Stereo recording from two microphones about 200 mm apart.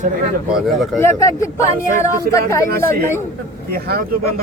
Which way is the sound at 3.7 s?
50° right (ahead or behind).